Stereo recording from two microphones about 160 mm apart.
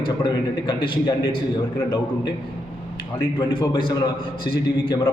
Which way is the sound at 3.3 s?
25° left (ahead or behind).